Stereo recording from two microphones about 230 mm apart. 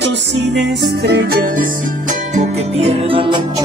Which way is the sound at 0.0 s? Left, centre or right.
Right.